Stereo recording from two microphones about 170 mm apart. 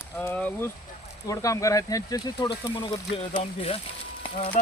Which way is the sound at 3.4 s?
35° left (ahead or behind).